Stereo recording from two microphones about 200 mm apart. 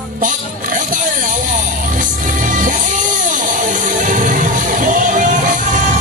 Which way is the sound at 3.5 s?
40° right (ahead or behind).